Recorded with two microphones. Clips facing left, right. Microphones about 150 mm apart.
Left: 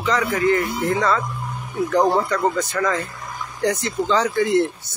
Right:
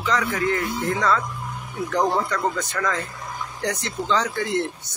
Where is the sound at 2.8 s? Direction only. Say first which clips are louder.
Left 4 dB; 10° left (ahead or behind).